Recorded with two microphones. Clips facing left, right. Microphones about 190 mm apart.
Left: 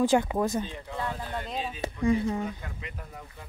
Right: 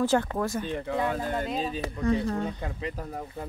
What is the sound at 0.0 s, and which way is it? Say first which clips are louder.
Speech: left 1 dB; 15° left (ahead or behind).